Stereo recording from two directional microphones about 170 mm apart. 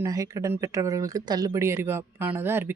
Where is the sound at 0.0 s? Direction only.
20° right (ahead or behind).